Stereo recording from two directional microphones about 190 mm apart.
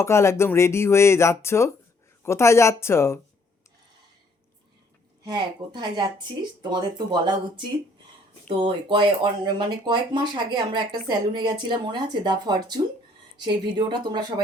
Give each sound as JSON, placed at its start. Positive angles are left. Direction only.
{"t": 0.0, "sound": "speech", "side_deg": 15}
{"t": 5.2, "sound": "speech", "side_deg": -25}